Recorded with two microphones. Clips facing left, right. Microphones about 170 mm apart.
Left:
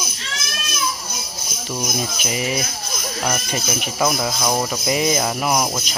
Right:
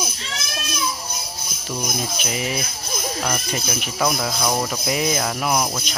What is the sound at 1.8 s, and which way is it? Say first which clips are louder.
Speech: left 1 dB; 10° left (ahead or behind).